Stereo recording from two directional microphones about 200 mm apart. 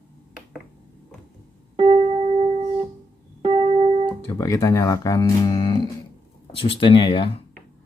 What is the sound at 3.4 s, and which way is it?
Music, 25° right (ahead or behind).